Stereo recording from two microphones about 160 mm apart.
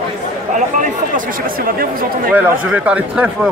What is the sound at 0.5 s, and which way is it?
Speech, 55° right (ahead or behind).